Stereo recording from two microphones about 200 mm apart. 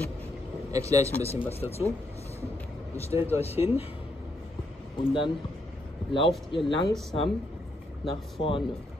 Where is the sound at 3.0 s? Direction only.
30° left (ahead or behind).